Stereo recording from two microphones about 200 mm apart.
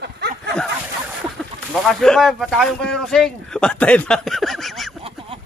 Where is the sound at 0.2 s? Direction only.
55° right (ahead or behind).